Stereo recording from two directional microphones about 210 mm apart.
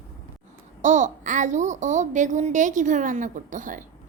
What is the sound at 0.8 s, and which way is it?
Child singing, 35° right (ahead or behind).